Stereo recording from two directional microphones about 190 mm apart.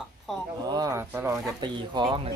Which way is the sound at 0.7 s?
20° right (ahead or behind).